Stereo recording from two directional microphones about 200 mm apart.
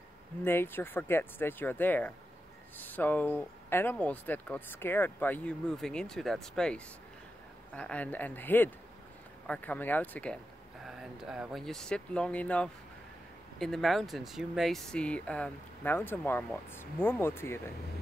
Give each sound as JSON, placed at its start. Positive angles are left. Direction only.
{"t": 0.4, "sound": "speech", "side_deg": 10}
{"t": 10.8, "sound": "speech", "side_deg": 0}